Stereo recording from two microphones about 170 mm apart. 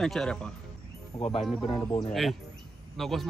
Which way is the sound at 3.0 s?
Centre (ahead or behind).